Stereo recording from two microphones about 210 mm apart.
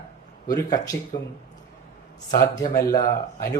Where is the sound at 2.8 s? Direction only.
20° left (ahead or behind).